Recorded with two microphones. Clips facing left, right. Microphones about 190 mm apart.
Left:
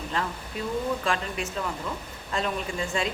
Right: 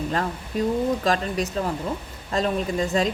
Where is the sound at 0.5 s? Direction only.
40° right (ahead or behind).